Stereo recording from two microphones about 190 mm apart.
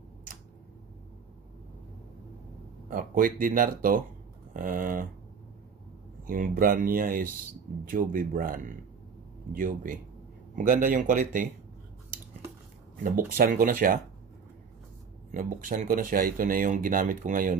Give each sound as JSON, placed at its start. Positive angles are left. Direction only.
{"t": 2.9, "sound": "speech", "side_deg": -45}
{"t": 6.2, "sound": "speech", "side_deg": -45}
{"t": 13.4, "sound": "speech", "side_deg": -45}
{"t": 15.3, "sound": "speech", "side_deg": -45}